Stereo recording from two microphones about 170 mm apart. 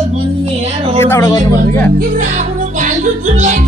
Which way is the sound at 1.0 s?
15° left (ahead or behind).